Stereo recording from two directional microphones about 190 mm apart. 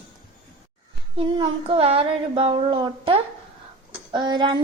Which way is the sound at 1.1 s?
30° right (ahead or behind).